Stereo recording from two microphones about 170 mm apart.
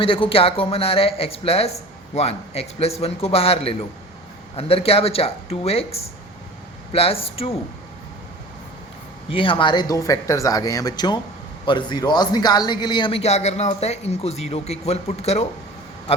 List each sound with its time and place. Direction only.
0.0 s a man's voice: 30° left (ahead or behind)
9.3 s a man's voice: 30° left (ahead or behind)